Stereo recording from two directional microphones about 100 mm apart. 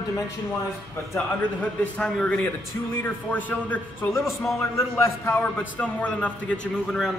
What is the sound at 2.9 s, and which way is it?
A man's voice, 20° left (ahead or behind).